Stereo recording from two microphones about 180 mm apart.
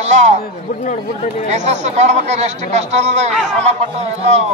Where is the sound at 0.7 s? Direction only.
45° left (ahead or behind).